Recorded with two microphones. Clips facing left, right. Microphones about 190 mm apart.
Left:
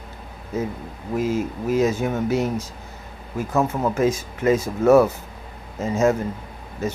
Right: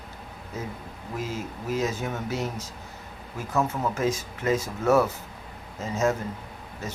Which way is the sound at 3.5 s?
45° left (ahead or behind).